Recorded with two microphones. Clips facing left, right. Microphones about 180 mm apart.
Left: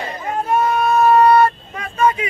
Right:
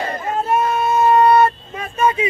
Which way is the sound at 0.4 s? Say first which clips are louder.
Left 1 dB; 25° right (ahead or behind).